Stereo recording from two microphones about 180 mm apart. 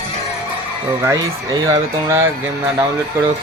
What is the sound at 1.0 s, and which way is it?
Speech, 20° right (ahead or behind).